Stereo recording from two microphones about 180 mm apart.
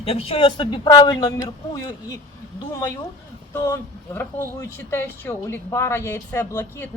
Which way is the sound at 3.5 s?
15° left (ahead or behind).